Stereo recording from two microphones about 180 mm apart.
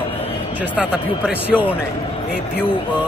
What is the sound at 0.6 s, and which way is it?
A man's voice, 10° right (ahead or behind).